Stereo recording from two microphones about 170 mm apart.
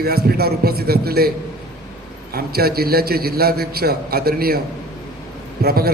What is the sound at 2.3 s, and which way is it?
A man's voice, 65° right (ahead or behind).